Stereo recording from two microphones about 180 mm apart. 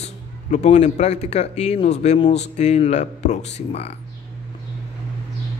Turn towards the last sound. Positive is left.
turn(degrees=35)  # may be behind; listen again after turning